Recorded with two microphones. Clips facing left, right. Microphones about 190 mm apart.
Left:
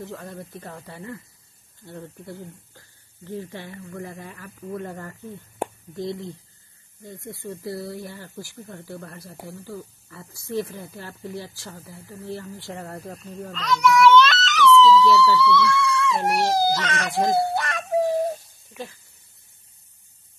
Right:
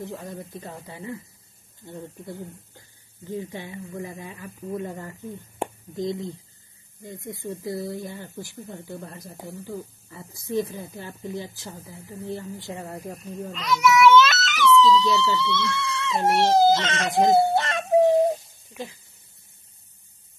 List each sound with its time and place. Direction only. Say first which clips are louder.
0.0 s speech: right 1 dB; 15° right (ahead or behind)